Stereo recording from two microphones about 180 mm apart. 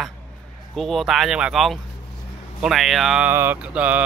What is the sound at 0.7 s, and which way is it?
Speech, centre (ahead or behind).